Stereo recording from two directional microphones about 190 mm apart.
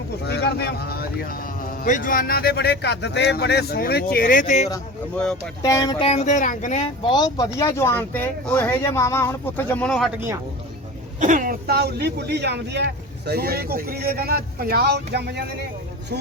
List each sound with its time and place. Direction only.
0.3 s speech: 60° left (ahead or behind); by 4.7 s 40° left (ahead or behind)
5.1 s speech: 5° left (ahead or behind)
5.6 s speech: 20° left (ahead or behind)
6.1 s speech: 40° left (ahead or behind); by 10.1 s 5° left (ahead or behind)
11.2 s speech: 45° right (ahead or behind); by 15.4 s 60° right (ahead or behind)